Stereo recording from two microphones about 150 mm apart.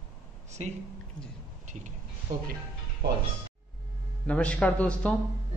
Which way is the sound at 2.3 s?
65° right (ahead or behind).